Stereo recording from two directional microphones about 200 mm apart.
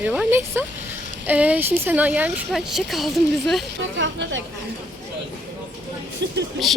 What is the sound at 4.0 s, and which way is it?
Speech, 70° right (ahead or behind).